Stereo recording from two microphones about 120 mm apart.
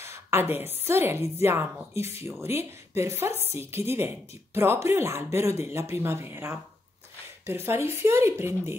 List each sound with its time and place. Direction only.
0.0 s a woman's voice: 20° right (ahead or behind)
7.6 s a woman's voice: 20° right (ahead or behind)